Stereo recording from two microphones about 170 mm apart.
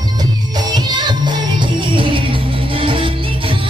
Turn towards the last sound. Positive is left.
turn(degrees=-30)  # may be behind; listen again after turning